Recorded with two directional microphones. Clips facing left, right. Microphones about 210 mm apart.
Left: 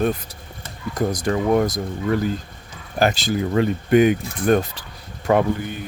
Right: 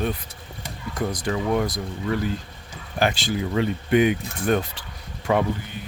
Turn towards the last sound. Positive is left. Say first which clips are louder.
# left 4 dB
turn(degrees=50)  # may be behind; listen again after turning